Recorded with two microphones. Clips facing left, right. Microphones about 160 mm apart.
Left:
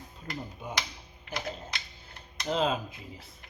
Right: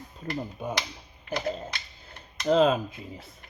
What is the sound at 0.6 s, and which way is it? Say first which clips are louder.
Speech: right 8 dB; 60° right (ahead or behind).